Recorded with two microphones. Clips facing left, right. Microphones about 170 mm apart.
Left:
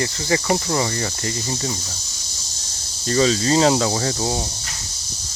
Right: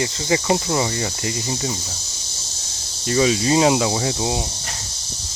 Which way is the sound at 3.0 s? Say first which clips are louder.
Even; 10° right (ahead or behind).